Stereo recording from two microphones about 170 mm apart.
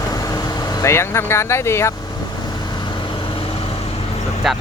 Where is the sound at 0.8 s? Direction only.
15° left (ahead or behind).